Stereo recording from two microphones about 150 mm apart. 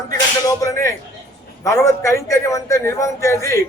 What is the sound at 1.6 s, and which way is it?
A man's voice, 20° left (ahead or behind).